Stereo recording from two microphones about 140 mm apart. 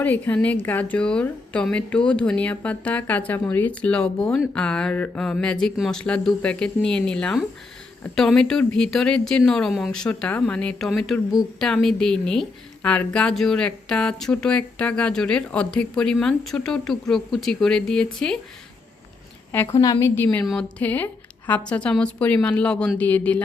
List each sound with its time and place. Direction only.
0.0 s a woman's voice: 10° left (ahead or behind)
19.5 s a woman's voice: 20° left (ahead or behind)